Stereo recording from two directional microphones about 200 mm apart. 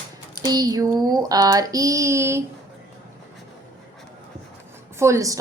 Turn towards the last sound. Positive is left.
turn(degrees=-15)  # may be behind; listen again after turning